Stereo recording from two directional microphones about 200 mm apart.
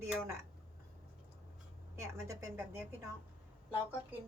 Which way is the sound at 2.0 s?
15° right (ahead or behind).